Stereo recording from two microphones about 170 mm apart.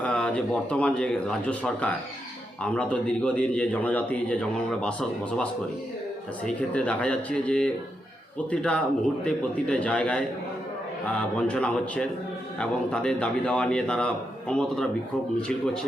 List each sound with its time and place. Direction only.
0.0 s a man's voice: 5° left (ahead or behind)
11.3 s a man's voice: 5° left (ahead or behind)